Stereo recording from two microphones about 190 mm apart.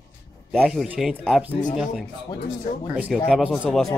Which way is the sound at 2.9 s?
5° right (ahead or behind).